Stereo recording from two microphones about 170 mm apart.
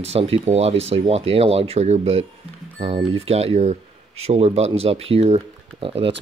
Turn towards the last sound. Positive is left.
turn(degrees=-35)  # may be behind; listen again after turning